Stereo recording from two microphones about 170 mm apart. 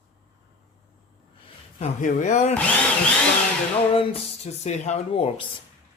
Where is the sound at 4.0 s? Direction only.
40° left (ahead or behind).